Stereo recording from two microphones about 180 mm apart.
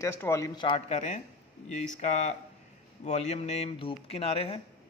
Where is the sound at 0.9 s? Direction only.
40° left (ahead or behind).